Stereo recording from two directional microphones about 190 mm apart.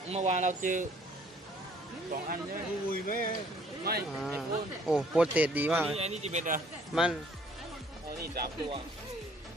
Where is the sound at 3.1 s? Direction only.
45° left (ahead or behind).